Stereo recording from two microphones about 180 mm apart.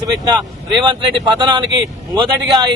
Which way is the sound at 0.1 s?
25° right (ahead or behind).